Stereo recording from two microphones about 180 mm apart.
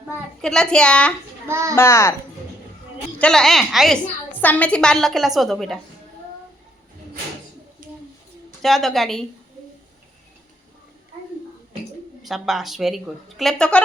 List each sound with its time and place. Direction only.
0.4 s a woman's voice: 5° left (ahead or behind)
1.5 s a child's voice: 15° right (ahead or behind)
1.7 s a child's voice: 15° left (ahead or behind)
3.2 s a woman's voice: 5° left (ahead or behind)
7.8 s a sound: 50° right (ahead or behind)
8.6 s a woman's voice: centre (ahead or behind)
12.2 s a woman's voice: centre (ahead or behind)